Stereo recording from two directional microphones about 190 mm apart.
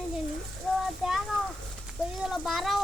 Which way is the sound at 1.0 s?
Centre (ahead or behind).